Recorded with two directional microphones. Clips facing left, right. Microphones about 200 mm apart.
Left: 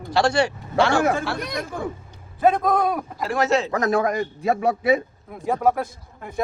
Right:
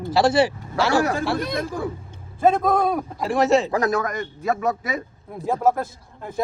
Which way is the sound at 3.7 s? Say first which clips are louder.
Left 1 dB; 35° right (ahead or behind).